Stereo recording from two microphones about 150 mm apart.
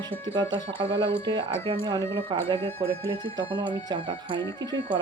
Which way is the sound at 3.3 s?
30° right (ahead or behind).